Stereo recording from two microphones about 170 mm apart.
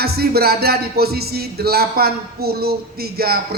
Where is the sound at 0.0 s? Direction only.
65° right (ahead or behind).